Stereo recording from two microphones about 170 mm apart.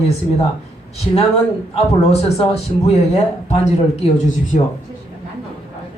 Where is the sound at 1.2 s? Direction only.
35° left (ahead or behind).